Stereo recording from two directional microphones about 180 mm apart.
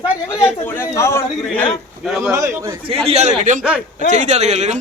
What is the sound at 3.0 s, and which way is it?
Speech, 35° right (ahead or behind).